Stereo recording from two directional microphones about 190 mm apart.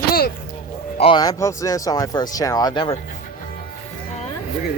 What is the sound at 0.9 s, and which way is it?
Speech, 25° left (ahead or behind).